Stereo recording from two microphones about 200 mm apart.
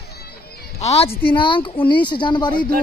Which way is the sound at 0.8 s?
30° left (ahead or behind).